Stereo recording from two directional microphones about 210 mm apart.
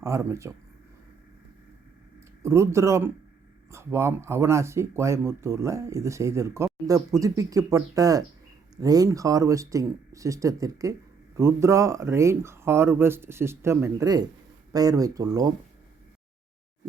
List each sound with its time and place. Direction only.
0.0 s speech: 15° right (ahead or behind)
2.4 s speech: 15° right (ahead or behind)